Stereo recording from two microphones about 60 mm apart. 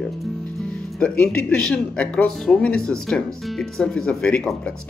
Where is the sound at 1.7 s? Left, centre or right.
Left.